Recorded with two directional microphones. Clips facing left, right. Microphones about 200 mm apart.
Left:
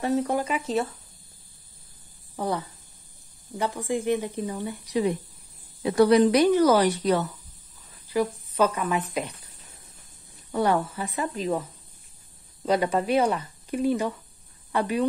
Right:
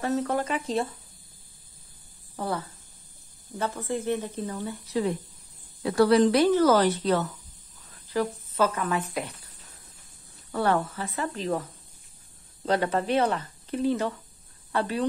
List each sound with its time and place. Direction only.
0.0 s speech: 10° left (ahead or behind)
2.3 s speech: 15° left (ahead or behind)
10.5 s speech: 15° left (ahead or behind)
12.6 s speech: 10° left (ahead or behind)